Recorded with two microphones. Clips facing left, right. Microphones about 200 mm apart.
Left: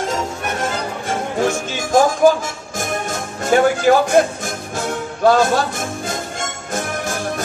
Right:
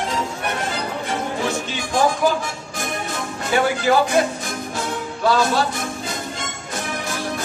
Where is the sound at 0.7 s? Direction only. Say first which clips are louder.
Left 2 dB; 45° left (ahead or behind).